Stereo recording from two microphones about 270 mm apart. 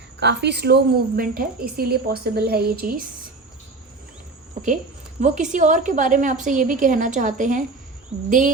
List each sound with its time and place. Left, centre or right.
0.2 s a woman's voice: right
5.2 s a woman's voice: right